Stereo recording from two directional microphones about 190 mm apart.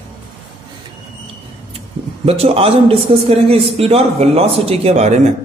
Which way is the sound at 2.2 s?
30° right (ahead or behind).